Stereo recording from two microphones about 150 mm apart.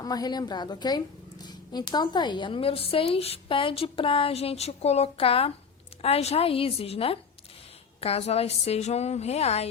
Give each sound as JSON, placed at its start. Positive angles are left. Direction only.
{"t": 0.0, "sound": "a woman's voice", "side_deg": 25}